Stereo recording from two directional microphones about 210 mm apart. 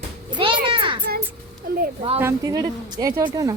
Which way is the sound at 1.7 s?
50° right (ahead or behind).